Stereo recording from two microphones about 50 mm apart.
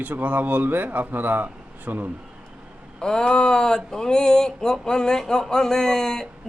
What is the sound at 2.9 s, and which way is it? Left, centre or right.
Speech, centre.